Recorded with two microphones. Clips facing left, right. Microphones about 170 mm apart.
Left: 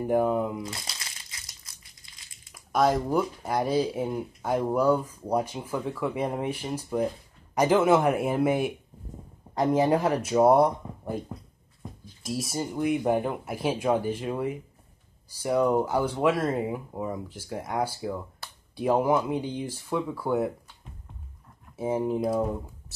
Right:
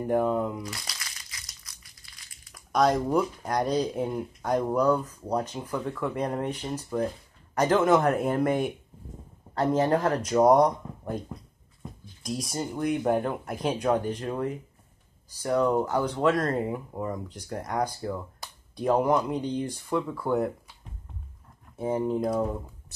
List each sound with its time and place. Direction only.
0.0 s speech: 5° left (ahead or behind)
0.7 s crumpling: 25° left (ahead or behind)
2.5 s speech: centre (ahead or behind)
21.7 s speech: 5° left (ahead or behind)